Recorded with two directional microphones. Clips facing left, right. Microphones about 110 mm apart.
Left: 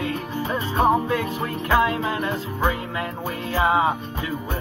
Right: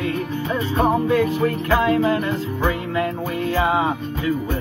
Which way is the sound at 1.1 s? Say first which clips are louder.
Right 7 dB; 20° left (ahead or behind).